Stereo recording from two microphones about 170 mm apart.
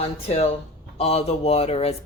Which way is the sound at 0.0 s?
35° left (ahead or behind).